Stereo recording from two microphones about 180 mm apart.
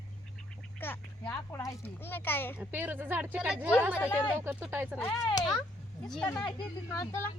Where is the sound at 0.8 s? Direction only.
10° left (ahead or behind).